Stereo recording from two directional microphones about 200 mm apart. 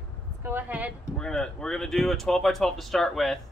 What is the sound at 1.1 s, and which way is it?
Speech, 5° left (ahead or behind).